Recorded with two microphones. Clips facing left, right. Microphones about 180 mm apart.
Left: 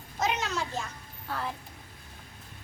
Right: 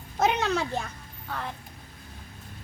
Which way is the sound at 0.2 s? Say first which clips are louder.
Right 6 dB; 60° right (ahead or behind).